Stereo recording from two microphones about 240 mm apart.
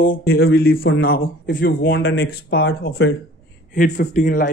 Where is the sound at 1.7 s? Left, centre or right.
Left.